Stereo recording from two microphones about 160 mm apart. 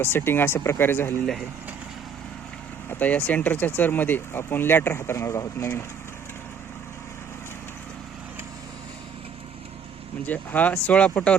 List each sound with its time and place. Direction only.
0.0 s speech: 15° left (ahead or behind)
2.9 s speech: 10° left (ahead or behind)
10.2 s speech: 10° left (ahead or behind)